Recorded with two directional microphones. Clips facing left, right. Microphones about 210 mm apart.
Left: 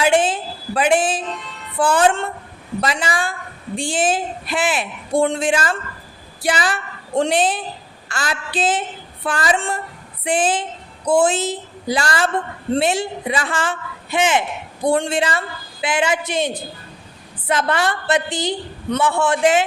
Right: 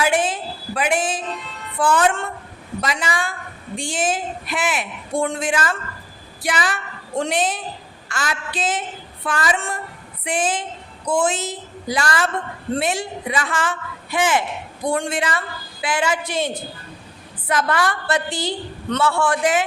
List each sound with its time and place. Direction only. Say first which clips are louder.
0.0 s a woman's voice: left 3 dB; 30° left (ahead or behind)